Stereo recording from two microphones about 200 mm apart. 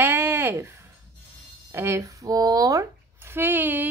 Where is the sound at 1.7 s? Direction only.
10° right (ahead or behind).